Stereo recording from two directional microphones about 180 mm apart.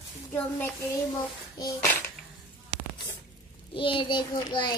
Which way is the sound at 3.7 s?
30° left (ahead or behind).